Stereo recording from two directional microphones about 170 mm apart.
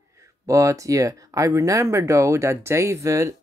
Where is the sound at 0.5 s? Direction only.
20° right (ahead or behind).